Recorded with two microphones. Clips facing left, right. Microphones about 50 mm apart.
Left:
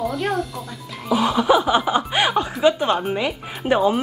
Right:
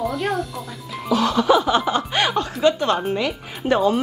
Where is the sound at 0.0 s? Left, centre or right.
Centre.